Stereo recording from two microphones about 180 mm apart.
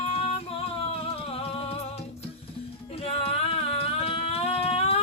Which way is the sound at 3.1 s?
35° left (ahead or behind).